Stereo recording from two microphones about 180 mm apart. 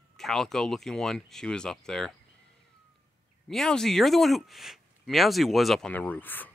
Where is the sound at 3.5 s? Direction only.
5° left (ahead or behind).